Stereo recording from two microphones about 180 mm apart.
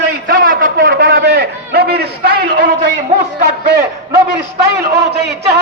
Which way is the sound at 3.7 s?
65° right (ahead or behind).